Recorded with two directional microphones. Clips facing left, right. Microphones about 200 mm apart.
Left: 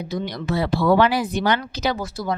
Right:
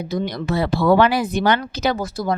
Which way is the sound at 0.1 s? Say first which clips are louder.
Right 3 dB; 45° right (ahead or behind).